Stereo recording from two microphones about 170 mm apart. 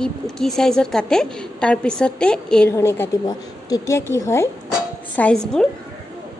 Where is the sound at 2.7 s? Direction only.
15° left (ahead or behind).